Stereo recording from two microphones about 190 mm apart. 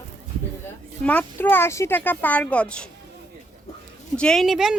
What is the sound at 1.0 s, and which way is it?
Speech, 5° left (ahead or behind).